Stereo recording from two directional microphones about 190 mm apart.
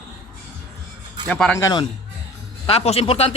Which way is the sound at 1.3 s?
10° left (ahead or behind).